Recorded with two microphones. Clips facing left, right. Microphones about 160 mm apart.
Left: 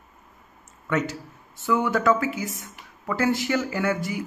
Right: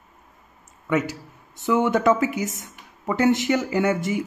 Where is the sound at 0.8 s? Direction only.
10° right (ahead or behind).